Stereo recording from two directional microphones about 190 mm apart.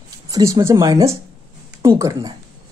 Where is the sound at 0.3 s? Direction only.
15° right (ahead or behind).